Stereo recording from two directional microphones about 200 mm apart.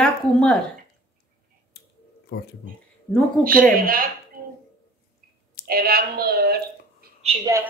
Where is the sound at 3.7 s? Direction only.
45° right (ahead or behind).